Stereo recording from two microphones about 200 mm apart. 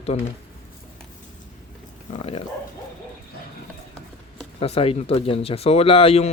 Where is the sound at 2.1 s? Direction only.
30° left (ahead or behind).